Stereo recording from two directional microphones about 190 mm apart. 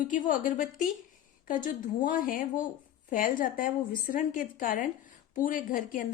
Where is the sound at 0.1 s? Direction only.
45° left (ahead or behind).